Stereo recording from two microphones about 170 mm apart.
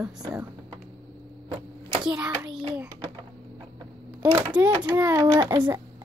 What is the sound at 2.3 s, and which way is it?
Child singing, 10° right (ahead or behind).